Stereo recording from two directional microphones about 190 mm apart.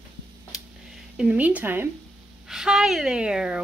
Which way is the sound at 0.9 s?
5° right (ahead or behind).